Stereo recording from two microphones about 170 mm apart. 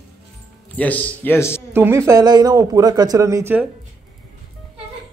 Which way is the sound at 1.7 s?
15° right (ahead or behind).